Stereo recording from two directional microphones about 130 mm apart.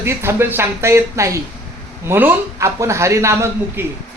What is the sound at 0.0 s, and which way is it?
A man's voice, 20° right (ahead or behind).